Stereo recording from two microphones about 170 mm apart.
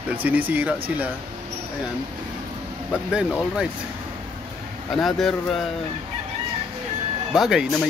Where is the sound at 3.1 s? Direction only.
5° right (ahead or behind).